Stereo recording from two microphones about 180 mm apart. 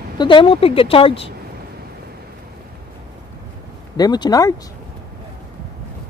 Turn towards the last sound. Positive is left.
turn(degrees=20)  # may be behind; listen again after turning